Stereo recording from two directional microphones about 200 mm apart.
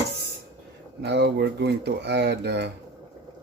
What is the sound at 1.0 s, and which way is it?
Speech, 60° right (ahead or behind).